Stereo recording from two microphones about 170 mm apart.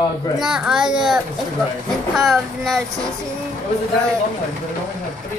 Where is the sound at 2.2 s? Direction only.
Centre (ahead or behind).